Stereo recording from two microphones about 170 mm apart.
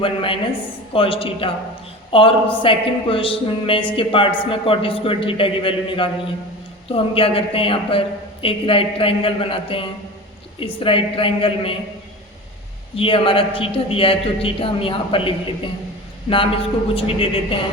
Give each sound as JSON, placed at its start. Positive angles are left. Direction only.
{"t": 0.0, "sound": "speech", "side_deg": 30}
{"t": 13.0, "sound": "speech", "side_deg": 30}